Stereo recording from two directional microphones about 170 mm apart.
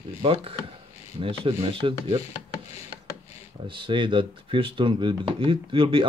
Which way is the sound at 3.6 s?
30° right (ahead or behind).